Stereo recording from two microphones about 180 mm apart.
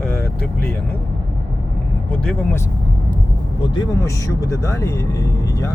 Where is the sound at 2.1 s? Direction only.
5° left (ahead or behind).